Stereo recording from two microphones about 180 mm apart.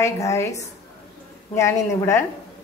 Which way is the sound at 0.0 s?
15° left (ahead or behind).